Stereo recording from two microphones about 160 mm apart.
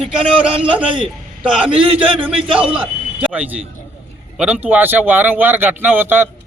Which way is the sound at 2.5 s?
5° right (ahead or behind).